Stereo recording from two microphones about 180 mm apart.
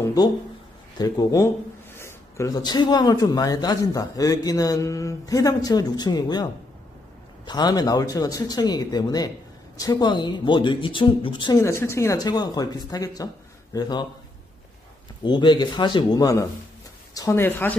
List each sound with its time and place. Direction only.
0.0 s a man's voice: 20° left (ahead or behind)
15.2 s a man's voice: 25° left (ahead or behind)